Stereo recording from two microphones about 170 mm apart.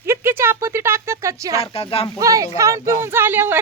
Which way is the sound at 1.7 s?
35° left (ahead or behind).